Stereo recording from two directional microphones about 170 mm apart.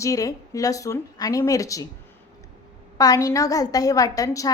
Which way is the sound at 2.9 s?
20° left (ahead or behind).